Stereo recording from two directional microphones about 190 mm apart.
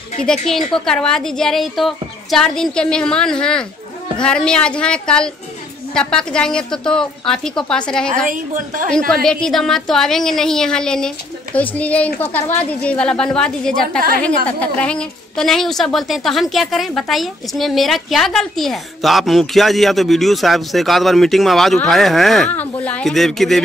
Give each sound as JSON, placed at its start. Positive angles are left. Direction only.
{"t": 0.2, "sound": "a woman's voice", "side_deg": 0}
{"t": 8.3, "sound": "a woman's voice", "side_deg": -45}
{"t": 8.9, "sound": "a woman's voice", "side_deg": 5}